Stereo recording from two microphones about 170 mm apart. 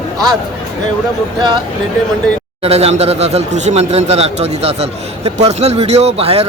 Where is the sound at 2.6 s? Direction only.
35° right (ahead or behind).